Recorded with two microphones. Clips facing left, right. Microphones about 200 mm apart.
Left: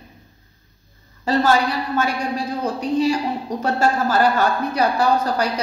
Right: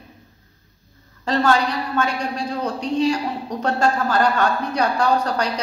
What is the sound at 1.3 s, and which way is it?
A woman's voice, 5° left (ahead or behind).